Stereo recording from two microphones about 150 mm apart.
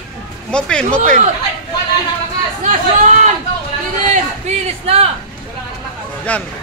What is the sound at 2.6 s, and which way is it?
Speech, 55° right (ahead or behind).